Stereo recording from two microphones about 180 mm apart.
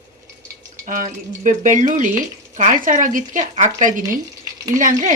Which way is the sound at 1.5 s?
45° right (ahead or behind).